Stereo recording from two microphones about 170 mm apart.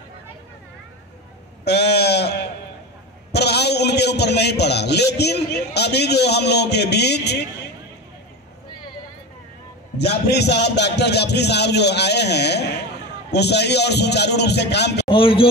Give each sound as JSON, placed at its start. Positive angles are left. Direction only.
{"t": 1.6, "sound": "sheep", "side_deg": 80}
{"t": 3.3, "sound": "a man's voice", "side_deg": 75}
{"t": 9.9, "sound": "a man's voice", "side_deg": 75}
{"t": 15.0, "sound": "speech", "side_deg": 30}